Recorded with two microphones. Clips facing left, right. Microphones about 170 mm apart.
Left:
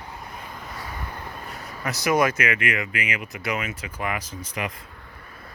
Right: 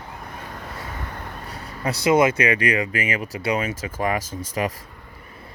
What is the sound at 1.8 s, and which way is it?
Speech, 30° right (ahead or behind).